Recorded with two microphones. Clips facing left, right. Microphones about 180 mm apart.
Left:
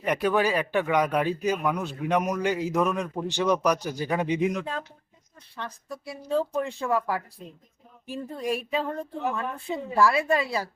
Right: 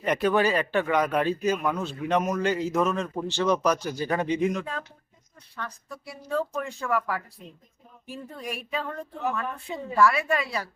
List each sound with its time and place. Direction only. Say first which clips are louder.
0.0 s speech: right 1 dB; 10° left (ahead or behind)
6.1 s speech: left 2 dB; 25° left (ahead or behind)